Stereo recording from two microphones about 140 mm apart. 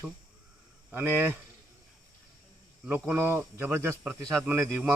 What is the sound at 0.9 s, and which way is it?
Speech, 15° right (ahead or behind).